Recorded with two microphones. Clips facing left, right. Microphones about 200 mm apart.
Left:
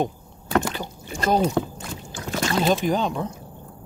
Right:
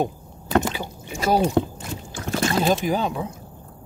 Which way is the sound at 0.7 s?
10° right (ahead or behind).